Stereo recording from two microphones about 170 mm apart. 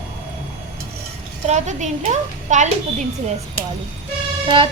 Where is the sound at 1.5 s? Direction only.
45° right (ahead or behind).